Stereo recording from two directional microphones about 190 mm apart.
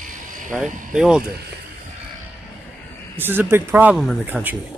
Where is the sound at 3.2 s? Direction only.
10° right (ahead or behind).